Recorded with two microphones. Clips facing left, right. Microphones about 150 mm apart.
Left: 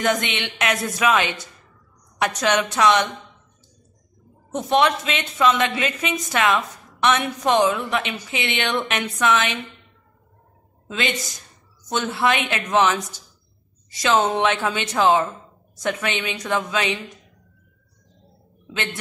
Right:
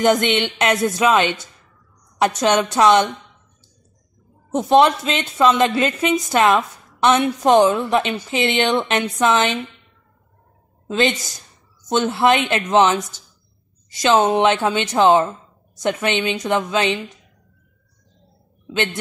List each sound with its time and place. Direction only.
0.0 s speech: 30° right (ahead or behind)
4.6 s a woman's voice: 30° right (ahead or behind)
12.0 s speech: 25° right (ahead or behind)
14.0 s speech: 25° right (ahead or behind)